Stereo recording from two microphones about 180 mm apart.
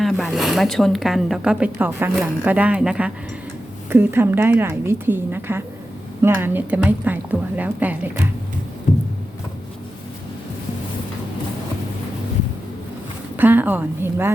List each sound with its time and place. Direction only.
0.0 s a woman's voice: centre (ahead or behind)
8.9 s music: 45° left (ahead or behind)
13.3 s a woman's voice: 10° right (ahead or behind)